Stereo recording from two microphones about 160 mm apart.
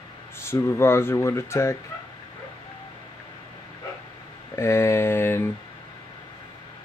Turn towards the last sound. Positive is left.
turn(degrees=15)  # may be behind; listen again after turning